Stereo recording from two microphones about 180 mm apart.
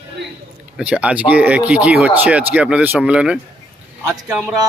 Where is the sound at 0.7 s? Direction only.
5° right (ahead or behind).